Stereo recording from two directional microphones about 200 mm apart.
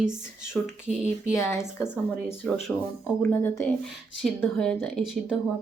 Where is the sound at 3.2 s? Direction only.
10° left (ahead or behind).